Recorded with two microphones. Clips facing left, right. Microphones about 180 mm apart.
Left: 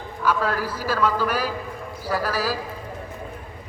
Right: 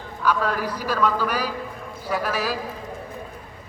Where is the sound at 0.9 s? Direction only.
5° left (ahead or behind).